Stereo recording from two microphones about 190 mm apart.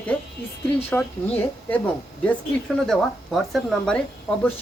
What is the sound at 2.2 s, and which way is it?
A woman's voice, centre (ahead or behind).